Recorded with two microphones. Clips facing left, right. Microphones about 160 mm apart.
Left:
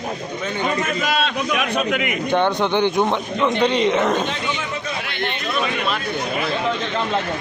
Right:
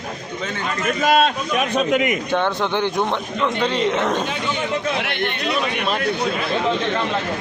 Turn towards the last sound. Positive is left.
turn(degrees=-60)  # may be behind; listen again after turning